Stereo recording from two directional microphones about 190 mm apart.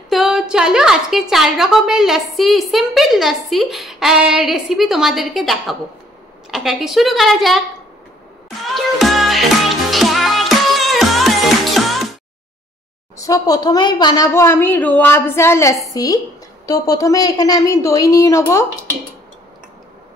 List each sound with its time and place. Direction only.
0.1 s a woman's voice: centre (ahead or behind)
8.7 s music: centre (ahead or behind)
13.2 s a woman's voice: 20° left (ahead or behind)